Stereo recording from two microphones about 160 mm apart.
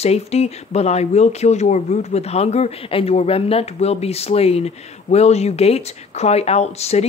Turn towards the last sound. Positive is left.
turn(degrees=40)  # may be behind; listen again after turning